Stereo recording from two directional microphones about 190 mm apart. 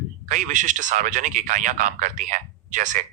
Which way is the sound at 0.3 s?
40° right (ahead or behind).